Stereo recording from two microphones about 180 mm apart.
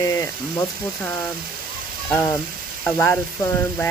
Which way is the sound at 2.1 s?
15° left (ahead or behind).